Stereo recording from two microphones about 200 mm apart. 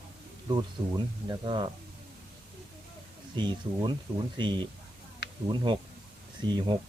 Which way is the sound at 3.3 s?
20° right (ahead or behind).